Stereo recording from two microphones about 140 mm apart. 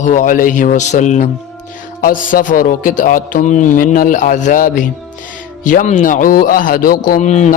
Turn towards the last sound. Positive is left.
turn(degrees=60)  # may be behind; listen again after turning